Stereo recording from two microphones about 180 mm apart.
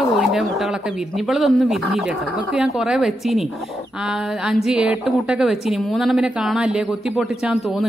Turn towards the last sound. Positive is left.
turn(degrees=-5)  # may be behind; listen again after turning